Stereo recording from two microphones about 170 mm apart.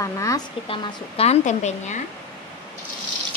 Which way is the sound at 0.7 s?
35° left (ahead or behind).